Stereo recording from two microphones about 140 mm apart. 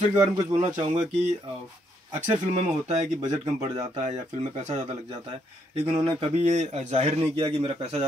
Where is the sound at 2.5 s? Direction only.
55° right (ahead or behind).